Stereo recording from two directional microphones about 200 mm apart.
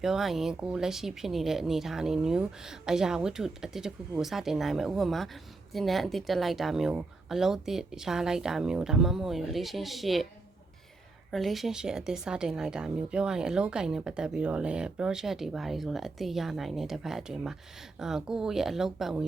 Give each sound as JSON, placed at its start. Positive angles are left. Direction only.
{"t": 0.0, "sound": "speech", "side_deg": 0}
{"t": 11.3, "sound": "speech", "side_deg": 0}